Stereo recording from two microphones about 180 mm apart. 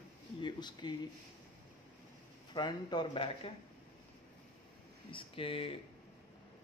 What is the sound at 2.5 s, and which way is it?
Speech, 25° left (ahead or behind).